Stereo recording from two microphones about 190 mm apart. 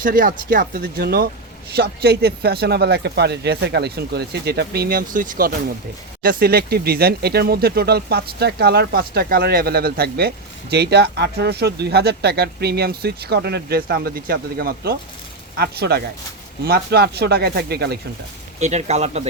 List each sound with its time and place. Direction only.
0.0 s speech: 45° right (ahead or behind)
18.6 s speech: 35° right (ahead or behind)